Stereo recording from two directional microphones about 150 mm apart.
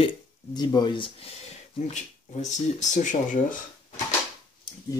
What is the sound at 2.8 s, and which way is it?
Speech, 55° left (ahead or behind).